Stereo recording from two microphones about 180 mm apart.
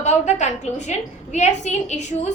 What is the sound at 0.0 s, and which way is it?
A woman's voice, 40° left (ahead or behind).